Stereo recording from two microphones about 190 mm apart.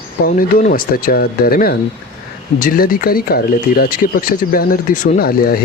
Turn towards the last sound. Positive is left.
turn(degrees=50)  # may be behind; listen again after turning